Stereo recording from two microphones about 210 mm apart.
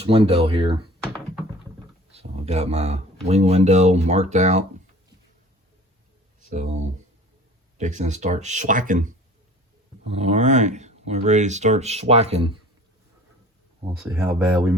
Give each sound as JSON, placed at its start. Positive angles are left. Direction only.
{"t": 0.0, "sound": "speech", "side_deg": -25}
{"t": 2.1, "sound": "speech", "side_deg": -30}
{"t": 7.8, "sound": "speech", "side_deg": -35}
{"t": 14.0, "sound": "speech", "side_deg": -5}